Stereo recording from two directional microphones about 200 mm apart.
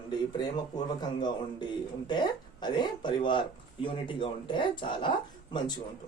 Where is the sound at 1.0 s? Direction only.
20° left (ahead or behind).